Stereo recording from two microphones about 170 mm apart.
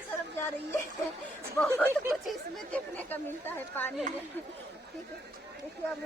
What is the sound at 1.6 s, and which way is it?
Speech, 10° left (ahead or behind).